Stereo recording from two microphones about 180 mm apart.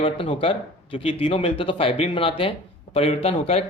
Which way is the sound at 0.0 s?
30° left (ahead or behind).